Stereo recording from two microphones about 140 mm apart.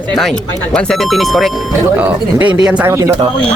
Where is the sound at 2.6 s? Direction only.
15° right (ahead or behind).